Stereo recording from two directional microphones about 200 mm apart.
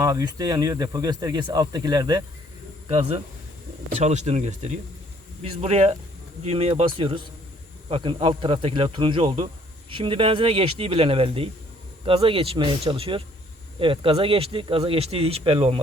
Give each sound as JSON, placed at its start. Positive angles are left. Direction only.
{"t": 0.0, "sound": "speech", "side_deg": -15}
{"t": 4.0, "sound": "speech", "side_deg": -35}